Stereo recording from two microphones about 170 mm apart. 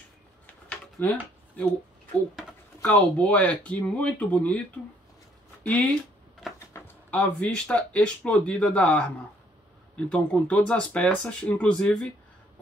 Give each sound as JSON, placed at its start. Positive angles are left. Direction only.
{"t": 0.7, "sound": "a sound", "side_deg": 10}
{"t": 2.8, "sound": "speech", "side_deg": 10}
{"t": 5.6, "sound": "speech", "side_deg": 10}